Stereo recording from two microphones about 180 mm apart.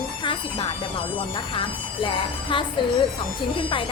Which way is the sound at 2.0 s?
30° left (ahead or behind).